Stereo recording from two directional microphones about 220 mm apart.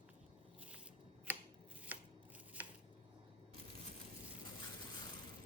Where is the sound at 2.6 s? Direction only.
10° right (ahead or behind).